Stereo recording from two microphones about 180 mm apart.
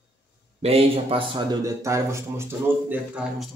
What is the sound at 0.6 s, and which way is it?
A man's voice, 30° right (ahead or behind).